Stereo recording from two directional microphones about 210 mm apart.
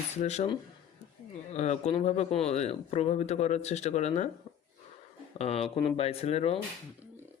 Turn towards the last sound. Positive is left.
turn(degrees=30)  # may be behind; listen again after turning